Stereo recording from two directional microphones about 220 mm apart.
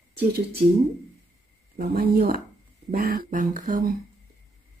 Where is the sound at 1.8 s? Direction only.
45° right (ahead or behind).